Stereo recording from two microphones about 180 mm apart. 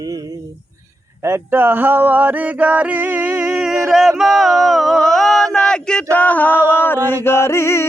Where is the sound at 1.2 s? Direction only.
15° right (ahead or behind); by 6.5 s 10° left (ahead or behind).